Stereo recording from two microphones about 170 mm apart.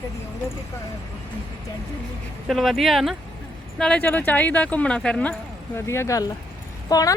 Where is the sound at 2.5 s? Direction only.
Centre (ahead or behind).